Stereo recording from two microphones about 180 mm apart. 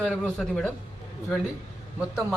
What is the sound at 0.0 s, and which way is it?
Speech, centre (ahead or behind).